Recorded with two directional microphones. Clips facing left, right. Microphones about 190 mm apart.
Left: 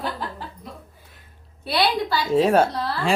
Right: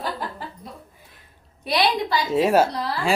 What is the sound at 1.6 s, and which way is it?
Speech, 20° right (ahead or behind).